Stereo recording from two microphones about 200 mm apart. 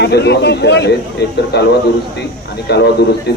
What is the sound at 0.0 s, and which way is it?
Speech, 55° left (ahead or behind).